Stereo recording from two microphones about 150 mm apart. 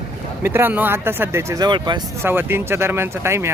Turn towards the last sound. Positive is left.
turn(degrees=-15)  # may be behind; listen again after turning